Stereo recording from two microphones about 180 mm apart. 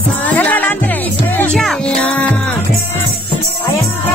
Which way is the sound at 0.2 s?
10° left (ahead or behind).